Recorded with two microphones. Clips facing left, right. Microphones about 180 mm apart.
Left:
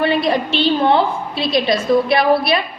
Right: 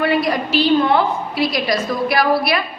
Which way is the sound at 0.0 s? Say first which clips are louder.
Left 1 dB; 25° left (ahead or behind).